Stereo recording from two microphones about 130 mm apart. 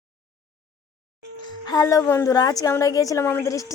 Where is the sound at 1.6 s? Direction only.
30° left (ahead or behind).